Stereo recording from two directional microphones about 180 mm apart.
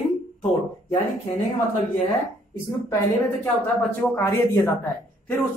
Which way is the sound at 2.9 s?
15° left (ahead or behind).